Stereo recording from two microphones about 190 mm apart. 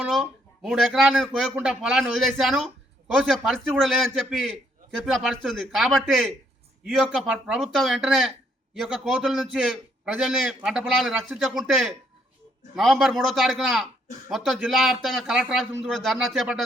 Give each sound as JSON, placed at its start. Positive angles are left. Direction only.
{"t": 0.0, "sound": "speech", "side_deg": -5}